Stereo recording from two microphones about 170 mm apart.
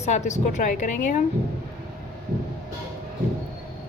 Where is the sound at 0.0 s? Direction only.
45° left (ahead or behind).